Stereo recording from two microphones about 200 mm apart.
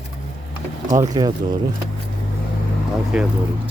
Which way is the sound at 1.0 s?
20° right (ahead or behind).